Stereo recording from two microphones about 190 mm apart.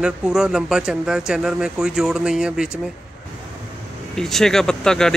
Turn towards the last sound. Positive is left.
turn(degrees=5)  # may be behind; listen again after turning